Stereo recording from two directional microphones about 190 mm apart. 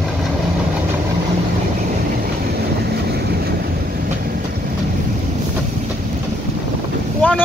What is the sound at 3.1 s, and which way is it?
Vehicle, 55° right (ahead or behind).